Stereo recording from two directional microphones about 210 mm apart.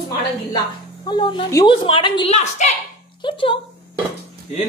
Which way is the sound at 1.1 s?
20° left (ahead or behind).